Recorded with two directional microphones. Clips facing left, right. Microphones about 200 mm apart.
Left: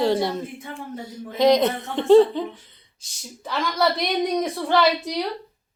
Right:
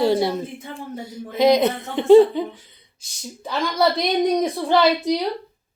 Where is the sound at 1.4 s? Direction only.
5° right (ahead or behind).